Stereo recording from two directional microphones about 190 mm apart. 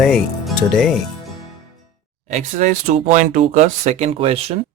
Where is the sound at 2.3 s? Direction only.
40° right (ahead or behind).